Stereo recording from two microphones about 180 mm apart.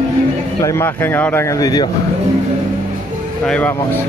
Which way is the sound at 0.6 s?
15° left (ahead or behind).